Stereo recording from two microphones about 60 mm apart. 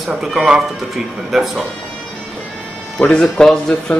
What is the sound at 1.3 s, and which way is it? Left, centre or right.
Speech, centre.